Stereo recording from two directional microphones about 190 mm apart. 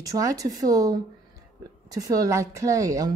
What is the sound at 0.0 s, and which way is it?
A woman's voice, 20° right (ahead or behind).